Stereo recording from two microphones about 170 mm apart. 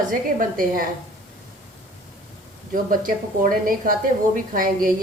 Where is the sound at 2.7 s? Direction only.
55° right (ahead or behind).